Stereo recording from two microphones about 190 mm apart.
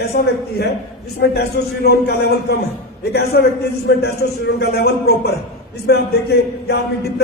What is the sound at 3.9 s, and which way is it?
A man's voice, 65° left (ahead or behind).